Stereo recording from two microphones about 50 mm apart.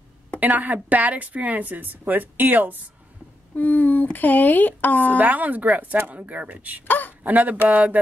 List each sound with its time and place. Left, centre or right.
0.4 s a woman's voice: right
3.5 s speech: left
5.1 s a woman's voice: right
6.9 s a sound: left
7.2 s a woman's voice: right